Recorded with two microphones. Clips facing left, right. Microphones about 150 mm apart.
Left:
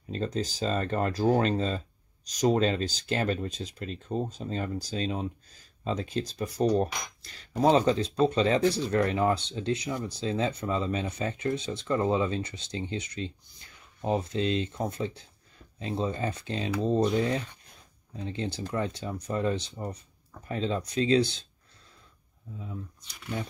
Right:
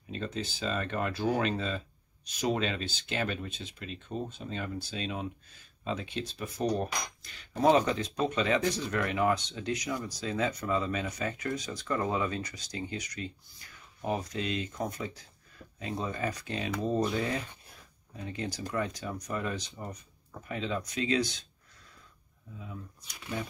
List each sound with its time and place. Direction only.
0.1 s speech: 40° left (ahead or behind)